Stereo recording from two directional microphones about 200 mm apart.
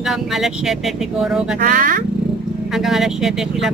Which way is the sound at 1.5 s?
45° right (ahead or behind).